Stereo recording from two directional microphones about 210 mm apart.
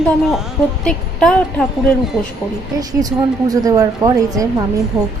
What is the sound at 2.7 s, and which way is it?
Speech, 15° right (ahead or behind).